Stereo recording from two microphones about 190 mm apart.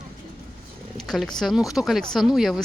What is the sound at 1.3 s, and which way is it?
Speech, centre (ahead or behind).